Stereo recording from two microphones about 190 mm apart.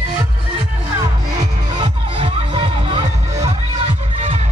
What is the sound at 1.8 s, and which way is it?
Music, 25° right (ahead or behind).